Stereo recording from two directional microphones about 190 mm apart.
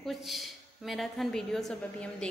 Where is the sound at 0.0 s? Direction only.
Centre (ahead or behind).